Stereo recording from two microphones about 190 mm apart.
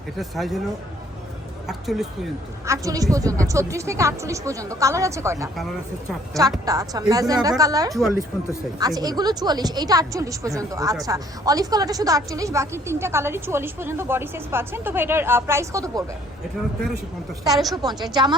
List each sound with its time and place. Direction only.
0.2 s speech: centre (ahead or behind)
1.6 s speech: centre (ahead or behind)
2.6 s a woman's voice: 20° right (ahead or behind)
6.7 s a woman's voice: 20° right (ahead or behind)
17.5 s speech: centre (ahead or behind)
17.8 s a woman's voice: 20° right (ahead or behind)